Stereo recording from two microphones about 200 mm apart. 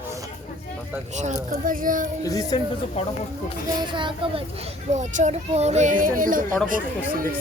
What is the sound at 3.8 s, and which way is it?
Speech, 25° right (ahead or behind).